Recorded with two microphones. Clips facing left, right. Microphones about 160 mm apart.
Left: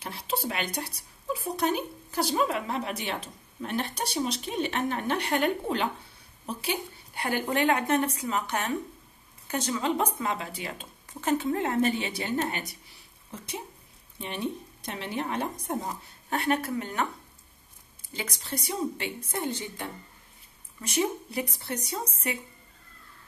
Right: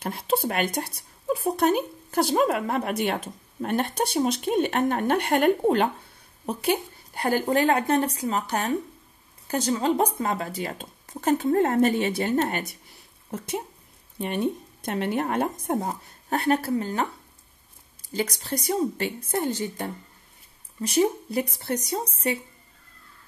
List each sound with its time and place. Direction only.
0.0 s speech: 50° right (ahead or behind)
14.1 s speech: 50° right (ahead or behind); by 17.1 s 35° right (ahead or behind)
18.1 s speech: 40° right (ahead or behind)